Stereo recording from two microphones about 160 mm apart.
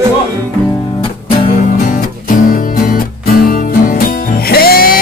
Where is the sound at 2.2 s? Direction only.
65° left (ahead or behind).